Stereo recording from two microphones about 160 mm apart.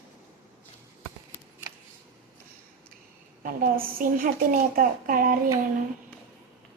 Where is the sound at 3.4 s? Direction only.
60° right (ahead or behind).